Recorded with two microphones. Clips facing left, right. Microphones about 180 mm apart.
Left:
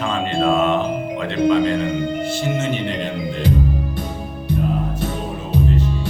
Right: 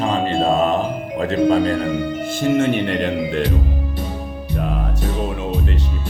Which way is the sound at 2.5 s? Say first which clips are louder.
Right 5 dB; 55° right (ahead or behind).